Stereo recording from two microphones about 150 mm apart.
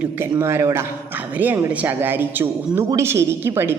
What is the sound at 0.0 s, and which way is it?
A man's voice, 15° right (ahead or behind).